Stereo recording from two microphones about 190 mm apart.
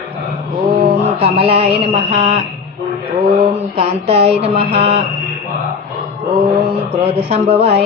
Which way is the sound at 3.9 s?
30° right (ahead or behind).